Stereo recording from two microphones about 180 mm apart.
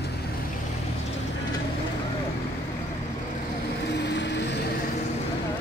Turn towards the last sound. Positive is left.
turn(degrees=75)  # may be behind; listen again after turning